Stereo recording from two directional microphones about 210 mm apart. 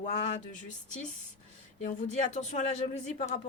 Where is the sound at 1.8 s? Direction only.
35° left (ahead or behind).